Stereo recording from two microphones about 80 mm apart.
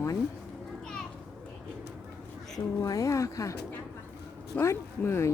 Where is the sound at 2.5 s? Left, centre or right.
Left.